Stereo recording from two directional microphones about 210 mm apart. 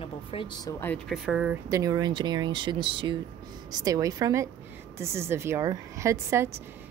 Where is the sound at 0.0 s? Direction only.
25° left (ahead or behind); by 1.6 s 5° right (ahead or behind).